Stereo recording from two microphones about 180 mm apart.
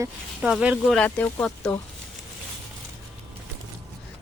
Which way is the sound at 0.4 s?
5° right (ahead or behind).